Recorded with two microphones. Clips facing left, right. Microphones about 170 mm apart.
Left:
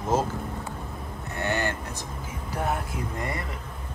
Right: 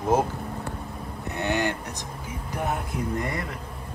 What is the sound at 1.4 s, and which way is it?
Vehicle, 15° right (ahead or behind).